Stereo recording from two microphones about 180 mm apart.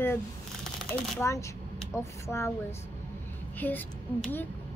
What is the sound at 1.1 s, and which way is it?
Speech, 15° left (ahead or behind).